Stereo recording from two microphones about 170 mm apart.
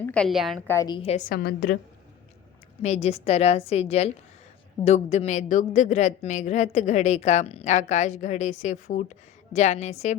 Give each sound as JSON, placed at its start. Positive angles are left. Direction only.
{"t": 0.0, "sound": "a woman's voice", "side_deg": 5}
{"t": 0.7, "sound": "a woman's voice", "side_deg": 20}
{"t": 0.9, "sound": "a woman's voice", "side_deg": 35}
{"t": 1.3, "sound": "a woman's voice", "side_deg": 65}
{"t": 2.8, "sound": "a woman's voice", "side_deg": 40}